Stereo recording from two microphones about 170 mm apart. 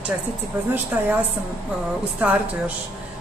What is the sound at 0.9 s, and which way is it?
Speech, 10° right (ahead or behind).